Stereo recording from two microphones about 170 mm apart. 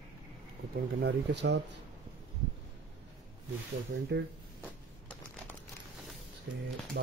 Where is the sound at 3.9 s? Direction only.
90° right.